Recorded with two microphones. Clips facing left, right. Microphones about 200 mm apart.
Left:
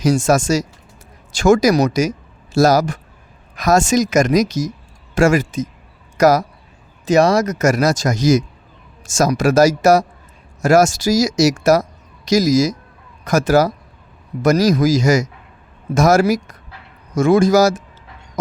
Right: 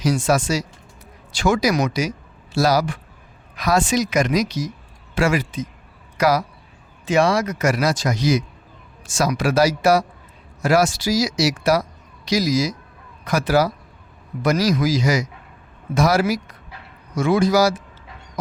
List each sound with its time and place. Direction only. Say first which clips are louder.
0.0 s a man's voice: left 4 dB; 45° left (ahead or behind)